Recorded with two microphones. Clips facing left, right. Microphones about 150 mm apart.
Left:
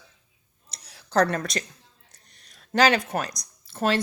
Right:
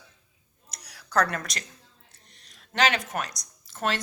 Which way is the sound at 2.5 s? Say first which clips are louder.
Left 5 dB; 35° left (ahead or behind).